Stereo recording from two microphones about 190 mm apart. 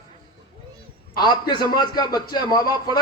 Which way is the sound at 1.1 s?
25° left (ahead or behind).